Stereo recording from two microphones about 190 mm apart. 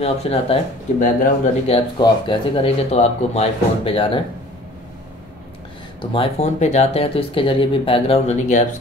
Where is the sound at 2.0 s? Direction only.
25° left (ahead or behind).